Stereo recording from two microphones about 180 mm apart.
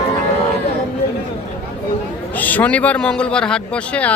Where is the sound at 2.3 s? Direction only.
10° left (ahead or behind).